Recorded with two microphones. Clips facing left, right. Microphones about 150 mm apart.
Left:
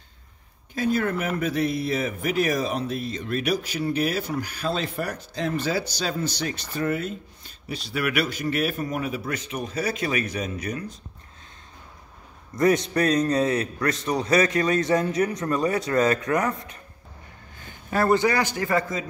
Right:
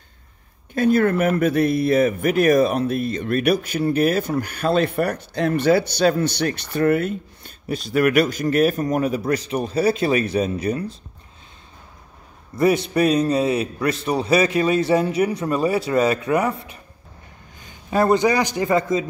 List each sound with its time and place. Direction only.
0.7 s speech: 55° right (ahead or behind); by 11.0 s 30° right (ahead or behind)
12.5 s a man's voice: 10° right (ahead or behind)